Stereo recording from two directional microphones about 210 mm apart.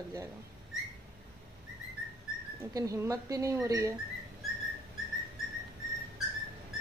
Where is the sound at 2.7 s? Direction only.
15° right (ahead or behind).